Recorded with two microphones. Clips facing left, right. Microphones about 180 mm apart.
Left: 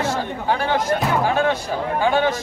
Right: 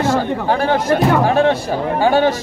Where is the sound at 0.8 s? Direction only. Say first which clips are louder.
Right 6 dB; 65° right (ahead or behind).